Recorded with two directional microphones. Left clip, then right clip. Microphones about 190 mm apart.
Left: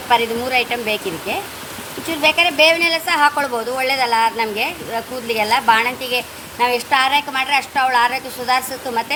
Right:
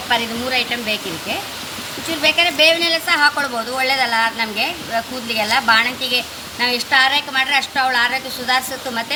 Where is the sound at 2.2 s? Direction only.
40° left (ahead or behind).